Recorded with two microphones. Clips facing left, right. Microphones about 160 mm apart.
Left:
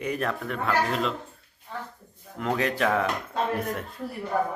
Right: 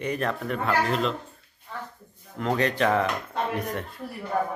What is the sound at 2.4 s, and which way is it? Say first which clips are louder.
Speech: right 2 dB; 5° left (ahead or behind).